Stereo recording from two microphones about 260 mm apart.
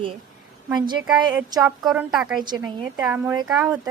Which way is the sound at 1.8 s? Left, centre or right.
Centre.